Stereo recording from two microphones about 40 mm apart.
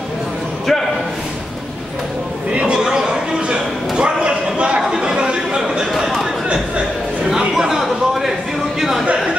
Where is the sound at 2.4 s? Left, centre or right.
Right.